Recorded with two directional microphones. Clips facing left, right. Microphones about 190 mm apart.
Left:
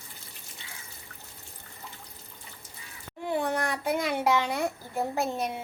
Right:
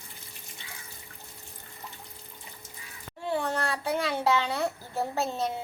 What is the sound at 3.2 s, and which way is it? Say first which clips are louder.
A child's voice: left 1 dB; 15° left (ahead or behind).